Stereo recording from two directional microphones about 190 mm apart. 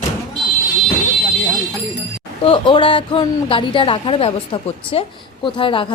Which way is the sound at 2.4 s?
25° left (ahead or behind).